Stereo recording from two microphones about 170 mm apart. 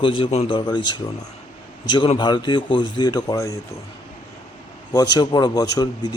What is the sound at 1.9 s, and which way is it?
Speech, 25° left (ahead or behind).